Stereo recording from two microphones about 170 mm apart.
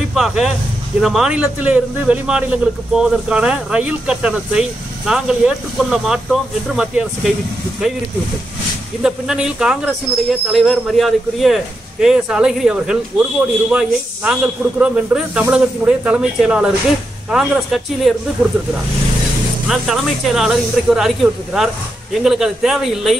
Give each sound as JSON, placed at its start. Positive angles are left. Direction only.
{"t": 0.1, "sound": "speech", "side_deg": 0}
{"t": 9.0, "sound": "speech", "side_deg": -5}
{"t": 19.7, "sound": "speech", "side_deg": 0}